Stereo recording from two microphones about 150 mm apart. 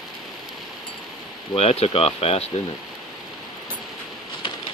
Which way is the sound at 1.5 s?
45° left (ahead or behind).